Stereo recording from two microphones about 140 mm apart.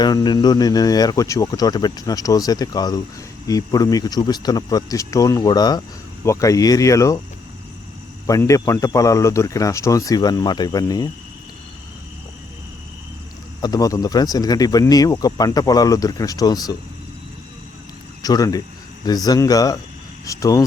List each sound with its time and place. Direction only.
0.0 s speech: 30° left (ahead or behind)
8.3 s speech: 25° left (ahead or behind)
13.6 s speech: 25° left (ahead or behind)
18.2 s speech: 25° left (ahead or behind)